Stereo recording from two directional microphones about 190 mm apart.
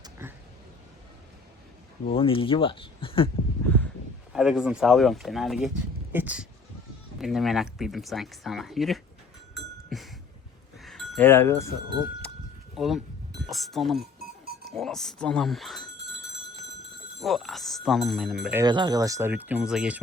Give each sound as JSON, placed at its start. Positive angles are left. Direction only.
{"t": 0.0, "sound": "a sound", "side_deg": -10}
{"t": 2.1, "sound": "speech", "side_deg": 30}
{"t": 4.3, "sound": "speech", "side_deg": -5}
{"t": 9.6, "sound": "a sound", "side_deg": 0}
{"t": 10.8, "sound": "chink", "side_deg": 0}
{"t": 11.3, "sound": "cowbell", "side_deg": 15}
{"t": 12.7, "sound": "speech", "side_deg": 0}
{"t": 17.2, "sound": "speech", "side_deg": 0}
{"t": 18.5, "sound": "speech", "side_deg": -20}